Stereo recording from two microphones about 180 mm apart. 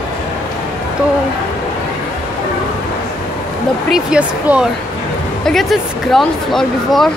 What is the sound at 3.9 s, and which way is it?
Speech, 5° right (ahead or behind).